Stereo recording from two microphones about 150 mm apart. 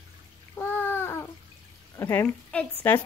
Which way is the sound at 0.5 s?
15° left (ahead or behind).